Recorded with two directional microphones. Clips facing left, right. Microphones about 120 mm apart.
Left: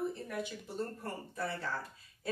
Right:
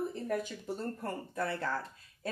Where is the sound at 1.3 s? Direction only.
55° right (ahead or behind).